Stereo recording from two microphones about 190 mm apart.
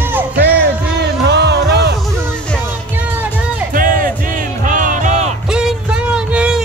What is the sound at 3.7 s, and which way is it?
Music, 45° right (ahead or behind).